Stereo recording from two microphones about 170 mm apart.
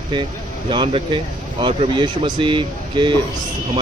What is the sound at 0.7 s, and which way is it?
Speech, 30° right (ahead or behind).